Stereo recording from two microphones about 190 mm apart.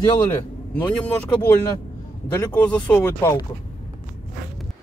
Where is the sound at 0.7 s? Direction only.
5° left (ahead or behind).